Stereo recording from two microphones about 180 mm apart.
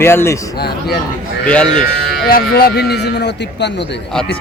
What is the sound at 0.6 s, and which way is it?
Speech, 60° left (ahead or behind).